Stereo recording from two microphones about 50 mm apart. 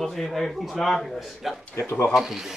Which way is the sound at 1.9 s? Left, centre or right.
Left.